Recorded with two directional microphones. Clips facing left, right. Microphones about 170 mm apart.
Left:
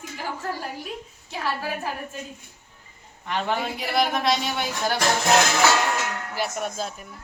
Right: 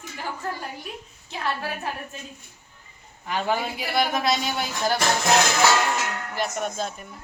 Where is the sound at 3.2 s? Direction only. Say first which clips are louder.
Right 1 dB; 5° right (ahead or behind).